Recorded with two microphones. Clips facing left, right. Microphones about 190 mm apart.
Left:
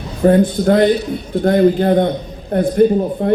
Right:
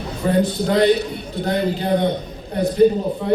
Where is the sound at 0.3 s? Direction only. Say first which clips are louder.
Left 7 dB; 50° left (ahead or behind).